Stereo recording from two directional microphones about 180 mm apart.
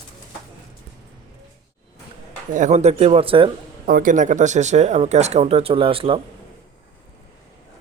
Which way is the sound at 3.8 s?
50° right (ahead or behind).